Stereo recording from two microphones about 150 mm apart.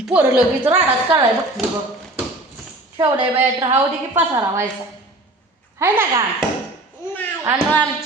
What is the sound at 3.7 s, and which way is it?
Speech, 15° right (ahead or behind).